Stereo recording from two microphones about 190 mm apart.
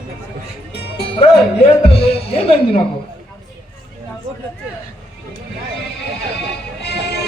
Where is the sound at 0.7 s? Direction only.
60° left (ahead or behind).